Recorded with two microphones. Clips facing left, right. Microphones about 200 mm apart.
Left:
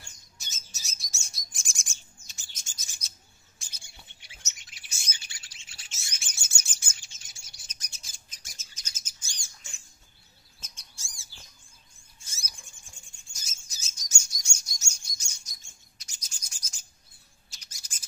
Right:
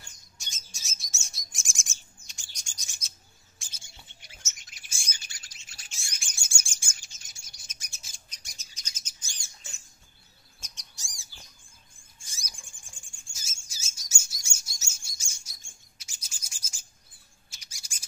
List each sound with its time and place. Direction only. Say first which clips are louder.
0.4 s bird: even; 5° left (ahead or behind)
4.6 s bird: even; 45° right (ahead or behind)
5.1 s chirp: even; 40° right (ahead or behind)
5.9 s bird: even; 15° right (ahead or behind)
7.0 s bird: even; 40° right (ahead or behind)
7.6 s bird: even; 10° right (ahead or behind); by 9.4 s 10° left (ahead or behind)
10.6 s bird: even; 15° right (ahead or behind)
12.3 s a sound: even; 15° right (ahead or behind)
12.5 s a sound: even; 50° right (ahead or behind)
13.0 s bird: right 1 dB; 50° right (ahead or behind)
13.3 s bird: right 1 dB; 10° right (ahead or behind)